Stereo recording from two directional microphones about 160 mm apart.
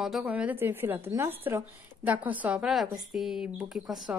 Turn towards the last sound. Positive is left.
turn(degrees=0)  # may be behind; listen again after turning